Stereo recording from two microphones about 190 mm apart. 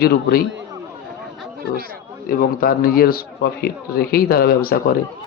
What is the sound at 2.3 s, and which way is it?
A man's voice, 50° left (ahead or behind).